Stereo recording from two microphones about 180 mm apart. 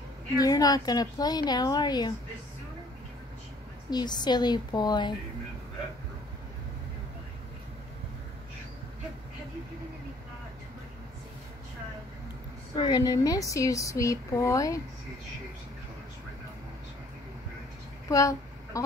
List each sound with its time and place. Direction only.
0.4 s a woman's voice: 20° left (ahead or behind)
3.9 s a woman's voice: 25° left (ahead or behind)
12.7 s speech: 25° left (ahead or behind)
18.1 s a sound: 20° left (ahead or behind)